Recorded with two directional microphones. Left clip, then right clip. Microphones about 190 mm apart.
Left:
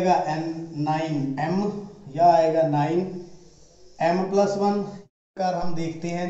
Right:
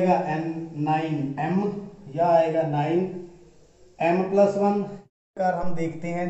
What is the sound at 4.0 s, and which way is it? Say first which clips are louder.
Speech: right 1 dB; 25° right (ahead or behind).